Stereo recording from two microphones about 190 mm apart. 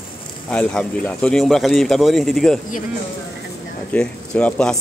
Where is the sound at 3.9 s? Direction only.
5° left (ahead or behind).